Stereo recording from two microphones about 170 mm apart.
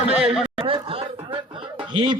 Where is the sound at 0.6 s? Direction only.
30° right (ahead or behind).